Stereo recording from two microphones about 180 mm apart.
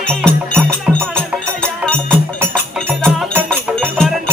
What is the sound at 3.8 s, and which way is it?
Music, 5° left (ahead or behind).